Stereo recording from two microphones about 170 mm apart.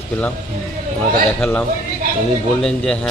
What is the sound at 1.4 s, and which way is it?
A man's voice, 10° left (ahead or behind).